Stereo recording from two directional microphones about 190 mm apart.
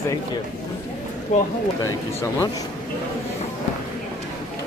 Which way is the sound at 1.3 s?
40° left (ahead or behind).